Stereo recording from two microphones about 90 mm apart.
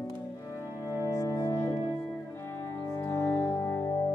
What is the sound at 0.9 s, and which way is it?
Music, 35° left (ahead or behind).